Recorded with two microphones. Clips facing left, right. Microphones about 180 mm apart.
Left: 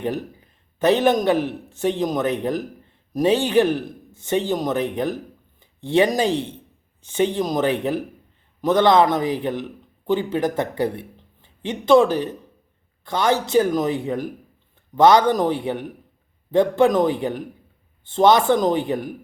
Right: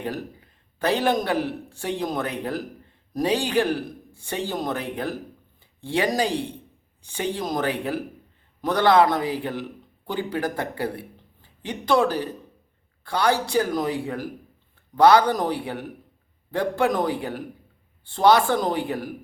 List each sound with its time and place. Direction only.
0.0 s a man's voice: 20° left (ahead or behind)